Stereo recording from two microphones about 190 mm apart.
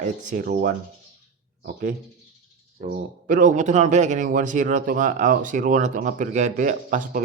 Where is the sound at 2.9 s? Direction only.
45° right (ahead or behind).